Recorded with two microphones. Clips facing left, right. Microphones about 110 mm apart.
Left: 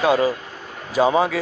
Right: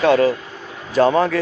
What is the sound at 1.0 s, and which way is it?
Speech, 10° left (ahead or behind).